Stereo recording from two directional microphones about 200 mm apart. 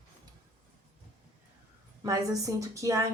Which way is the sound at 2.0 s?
15° right (ahead or behind).